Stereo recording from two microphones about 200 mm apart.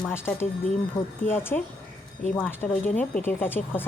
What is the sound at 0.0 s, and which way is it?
Speech, 10° left (ahead or behind).